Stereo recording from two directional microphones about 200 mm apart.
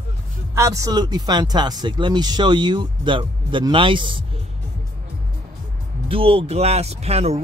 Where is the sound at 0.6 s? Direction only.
15° right (ahead or behind).